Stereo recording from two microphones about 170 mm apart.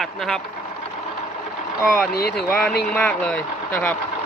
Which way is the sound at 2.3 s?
5° left (ahead or behind).